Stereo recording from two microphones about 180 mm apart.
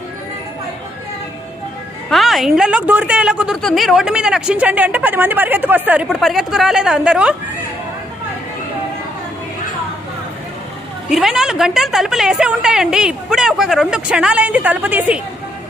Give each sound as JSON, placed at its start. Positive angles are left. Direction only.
{"t": 2.0, "sound": "a woman's voice", "side_deg": 0}
{"t": 11.1, "sound": "a woman's voice", "side_deg": 0}